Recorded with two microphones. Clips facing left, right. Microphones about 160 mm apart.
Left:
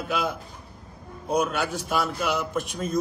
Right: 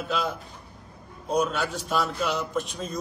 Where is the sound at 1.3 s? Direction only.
5° left (ahead or behind).